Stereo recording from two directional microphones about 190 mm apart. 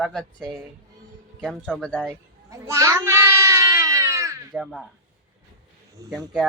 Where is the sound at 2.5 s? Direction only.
15° right (ahead or behind).